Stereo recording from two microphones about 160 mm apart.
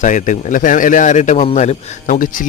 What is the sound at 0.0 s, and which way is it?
A man's voice, 50° left (ahead or behind).